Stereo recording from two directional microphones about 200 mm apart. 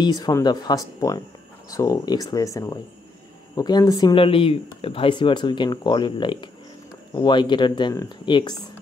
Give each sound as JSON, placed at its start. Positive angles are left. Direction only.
{"t": 0.0, "sound": "speech", "side_deg": 20}